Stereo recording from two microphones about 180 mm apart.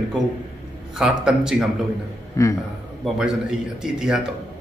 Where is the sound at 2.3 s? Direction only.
15° left (ahead or behind).